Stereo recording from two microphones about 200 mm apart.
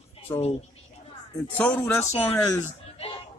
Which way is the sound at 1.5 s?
5° left (ahead or behind).